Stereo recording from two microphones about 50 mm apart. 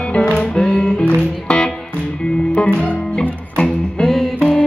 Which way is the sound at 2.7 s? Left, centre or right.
Centre.